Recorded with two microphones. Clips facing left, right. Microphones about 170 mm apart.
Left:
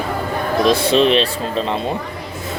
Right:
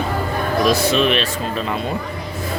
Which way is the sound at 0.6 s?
30° left (ahead or behind).